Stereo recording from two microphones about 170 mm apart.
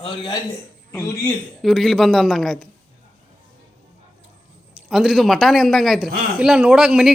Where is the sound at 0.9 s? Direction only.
15° left (ahead or behind).